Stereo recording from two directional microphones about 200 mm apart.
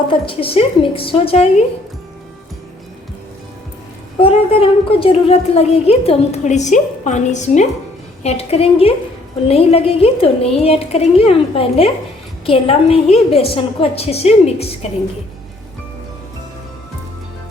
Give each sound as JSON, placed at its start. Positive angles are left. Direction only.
{"t": 0.1, "sound": "a woman's voice", "side_deg": 25}
{"t": 4.2, "sound": "a woman's voice", "side_deg": 30}